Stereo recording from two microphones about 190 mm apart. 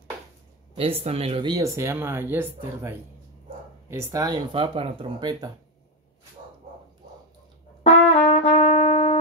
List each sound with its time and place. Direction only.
0.7 s speech: 30° right (ahead or behind)
7.8 s brass instrument: 35° left (ahead or behind)